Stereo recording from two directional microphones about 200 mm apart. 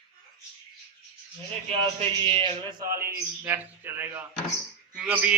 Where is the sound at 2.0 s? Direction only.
25° right (ahead or behind).